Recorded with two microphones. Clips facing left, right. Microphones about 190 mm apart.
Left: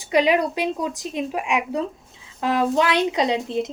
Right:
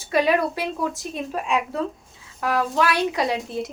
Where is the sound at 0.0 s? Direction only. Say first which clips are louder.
Left 2 dB; 15° left (ahead or behind).